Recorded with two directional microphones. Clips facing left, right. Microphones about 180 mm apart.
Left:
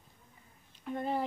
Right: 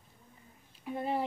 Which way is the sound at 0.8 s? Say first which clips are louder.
Even; 5° right (ahead or behind).